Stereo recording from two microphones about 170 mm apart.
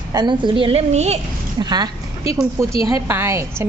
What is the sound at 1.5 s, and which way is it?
A woman's voice, 25° right (ahead or behind).